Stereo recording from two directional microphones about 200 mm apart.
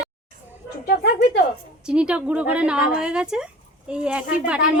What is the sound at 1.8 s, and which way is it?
Speech, 5° right (ahead or behind).